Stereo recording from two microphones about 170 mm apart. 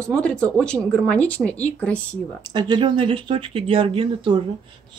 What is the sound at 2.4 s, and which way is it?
Speech, 25° right (ahead or behind).